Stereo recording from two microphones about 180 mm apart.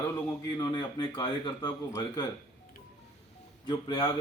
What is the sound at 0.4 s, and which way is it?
Speech, 20° left (ahead or behind).